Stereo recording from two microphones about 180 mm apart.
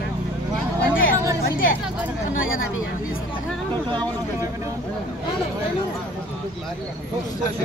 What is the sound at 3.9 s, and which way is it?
Speech, 25° right (ahead or behind).